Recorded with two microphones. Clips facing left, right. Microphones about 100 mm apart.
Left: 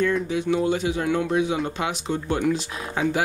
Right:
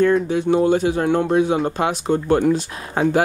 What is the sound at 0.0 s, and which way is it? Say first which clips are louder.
Speech: right 6 dB; 40° right (ahead or behind).